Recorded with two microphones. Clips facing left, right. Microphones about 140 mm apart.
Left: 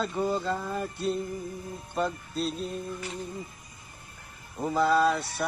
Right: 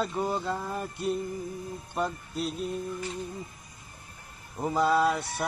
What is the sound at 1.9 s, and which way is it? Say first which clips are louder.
Mantra: left 2 dB; 15° right (ahead or behind).